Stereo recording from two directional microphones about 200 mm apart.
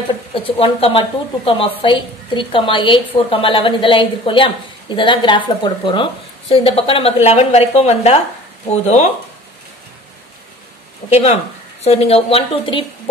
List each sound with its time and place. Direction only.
0.3 s a woman's voice: 30° left (ahead or behind)
11.1 s a woman's voice: 30° left (ahead or behind)